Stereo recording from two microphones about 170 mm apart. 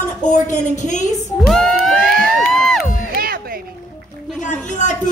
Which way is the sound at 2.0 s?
60° right (ahead or behind).